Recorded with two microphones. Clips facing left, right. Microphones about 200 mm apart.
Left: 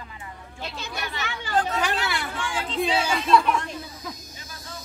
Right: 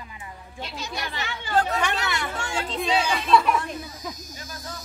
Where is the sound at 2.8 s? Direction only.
Centre (ahead or behind).